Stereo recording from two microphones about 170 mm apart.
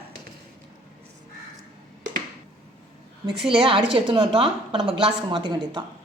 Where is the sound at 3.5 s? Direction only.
30° right (ahead or behind).